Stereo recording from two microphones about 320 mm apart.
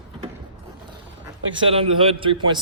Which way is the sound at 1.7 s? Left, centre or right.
Centre.